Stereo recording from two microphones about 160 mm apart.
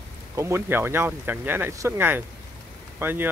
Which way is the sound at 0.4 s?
15° right (ahead or behind).